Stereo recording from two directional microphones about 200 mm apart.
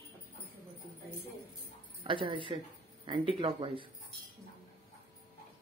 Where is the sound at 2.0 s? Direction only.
25° right (ahead or behind).